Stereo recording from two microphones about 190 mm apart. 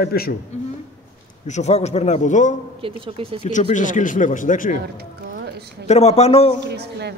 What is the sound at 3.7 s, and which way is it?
Speech, 40° left (ahead or behind).